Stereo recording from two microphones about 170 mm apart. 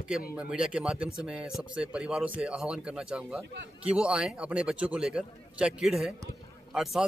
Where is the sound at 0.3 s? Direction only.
5° right (ahead or behind).